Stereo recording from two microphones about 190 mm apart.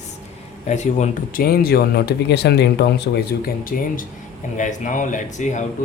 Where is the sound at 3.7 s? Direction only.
50° left (ahead or behind).